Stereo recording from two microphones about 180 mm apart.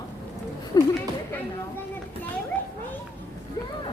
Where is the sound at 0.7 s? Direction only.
20° left (ahead or behind).